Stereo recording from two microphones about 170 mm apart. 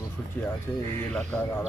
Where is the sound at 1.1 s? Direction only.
10° left (ahead or behind).